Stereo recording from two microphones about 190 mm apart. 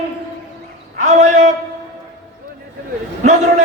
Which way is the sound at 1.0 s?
40° right (ahead or behind).